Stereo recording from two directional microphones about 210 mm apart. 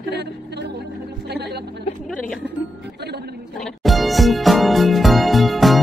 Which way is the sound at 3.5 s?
Centre (ahead or behind).